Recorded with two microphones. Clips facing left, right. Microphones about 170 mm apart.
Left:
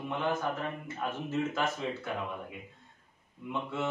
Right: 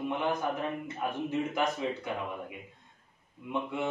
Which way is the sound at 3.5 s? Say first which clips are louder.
Right 2 dB; 15° right (ahead or behind).